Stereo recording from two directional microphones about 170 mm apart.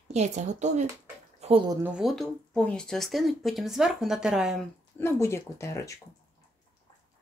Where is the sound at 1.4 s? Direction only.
35° right (ahead or behind).